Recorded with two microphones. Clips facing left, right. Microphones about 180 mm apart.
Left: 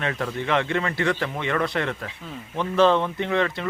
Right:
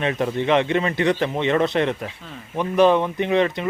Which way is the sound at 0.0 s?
20° right (ahead or behind).